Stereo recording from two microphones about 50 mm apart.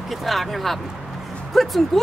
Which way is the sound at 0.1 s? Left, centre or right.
Centre.